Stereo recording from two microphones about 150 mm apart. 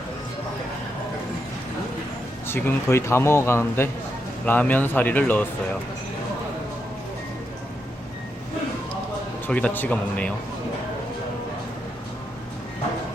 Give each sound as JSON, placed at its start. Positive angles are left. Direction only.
{"t": 2.5, "sound": "speech", "side_deg": 15}
{"t": 9.5, "sound": "speech", "side_deg": 10}